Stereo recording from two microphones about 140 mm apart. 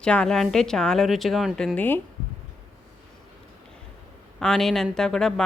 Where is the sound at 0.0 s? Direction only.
5° left (ahead or behind).